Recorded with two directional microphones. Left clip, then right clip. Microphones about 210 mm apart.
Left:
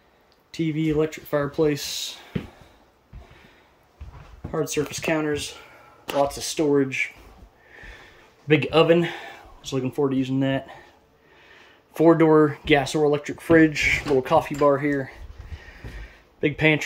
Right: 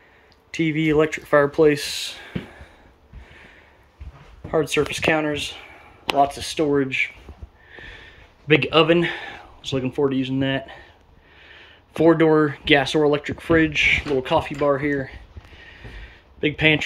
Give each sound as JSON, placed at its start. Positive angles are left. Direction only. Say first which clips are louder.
{"t": 0.6, "sound": "speech", "louder": "right 4 dB", "side_deg": 5}
{"t": 4.5, "sound": "speech", "louder": "right 5 dB", "side_deg": 5}
{"t": 7.7, "sound": "sniff", "louder": "right 4 dB", "side_deg": 10}
{"t": 8.5, "sound": "speech", "louder": "right 1 dB", "side_deg": 15}
{"t": 16.3, "sound": "speech", "louder": "right 2 dB", "side_deg": 15}